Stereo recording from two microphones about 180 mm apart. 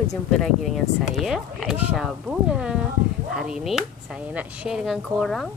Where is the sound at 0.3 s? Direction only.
Centre (ahead or behind).